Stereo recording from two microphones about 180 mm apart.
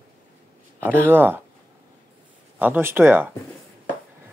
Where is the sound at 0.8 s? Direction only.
10° right (ahead or behind).